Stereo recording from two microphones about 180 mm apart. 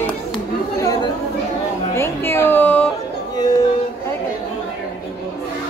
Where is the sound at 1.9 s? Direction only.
15° left (ahead or behind).